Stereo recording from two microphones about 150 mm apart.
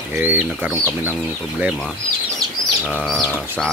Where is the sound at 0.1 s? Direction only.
15° right (ahead or behind).